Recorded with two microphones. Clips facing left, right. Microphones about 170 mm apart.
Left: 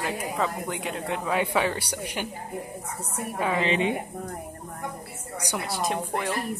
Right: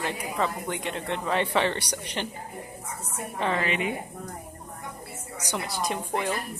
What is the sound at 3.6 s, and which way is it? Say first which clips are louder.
Speech: left 4 dB; 25° left (ahead or behind).